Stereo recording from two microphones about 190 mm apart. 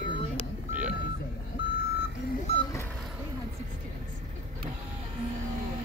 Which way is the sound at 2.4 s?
30° left (ahead or behind).